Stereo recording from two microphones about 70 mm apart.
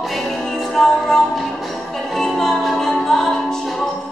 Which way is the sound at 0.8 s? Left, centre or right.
Centre.